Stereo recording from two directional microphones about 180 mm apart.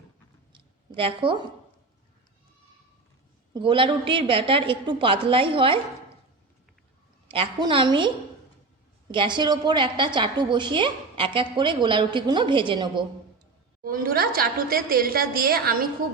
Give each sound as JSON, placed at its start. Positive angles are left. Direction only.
{"t": 0.5, "sound": "a sound", "side_deg": -30}
{"t": 3.5, "sound": "a woman's voice", "side_deg": -30}
{"t": 7.3, "sound": "a woman's voice", "side_deg": -30}
{"t": 9.1, "sound": "a woman's voice", "side_deg": -25}
{"t": 13.8, "sound": "a woman's voice", "side_deg": -50}